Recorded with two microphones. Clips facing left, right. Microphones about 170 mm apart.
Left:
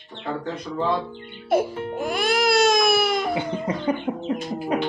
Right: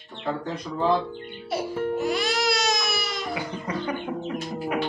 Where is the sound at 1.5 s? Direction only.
50° left (ahead or behind).